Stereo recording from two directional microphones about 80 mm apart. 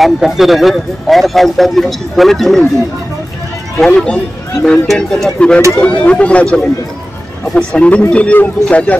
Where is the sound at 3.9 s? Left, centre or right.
Centre.